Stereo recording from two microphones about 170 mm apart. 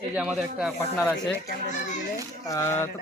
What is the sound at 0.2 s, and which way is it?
Speech, 5° right (ahead or behind).